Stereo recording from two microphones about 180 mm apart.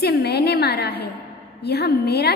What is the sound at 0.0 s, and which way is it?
A woman's voice, 65° left (ahead or behind).